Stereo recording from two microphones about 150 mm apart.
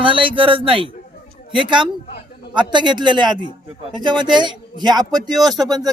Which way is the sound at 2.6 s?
30° right (ahead or behind).